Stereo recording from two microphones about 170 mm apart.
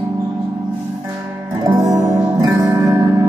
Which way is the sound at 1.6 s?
20° right (ahead or behind).